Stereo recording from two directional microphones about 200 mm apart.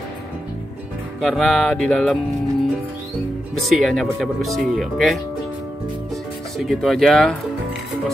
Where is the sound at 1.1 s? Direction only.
Centre (ahead or behind).